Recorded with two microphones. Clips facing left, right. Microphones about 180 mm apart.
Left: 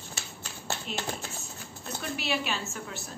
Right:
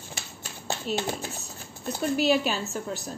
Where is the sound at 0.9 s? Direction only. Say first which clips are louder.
Right 9 dB; 40° right (ahead or behind).